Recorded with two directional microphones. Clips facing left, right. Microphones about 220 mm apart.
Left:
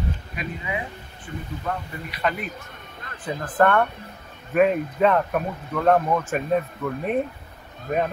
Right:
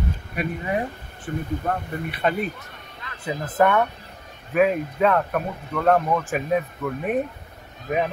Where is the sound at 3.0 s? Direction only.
50° left (ahead or behind).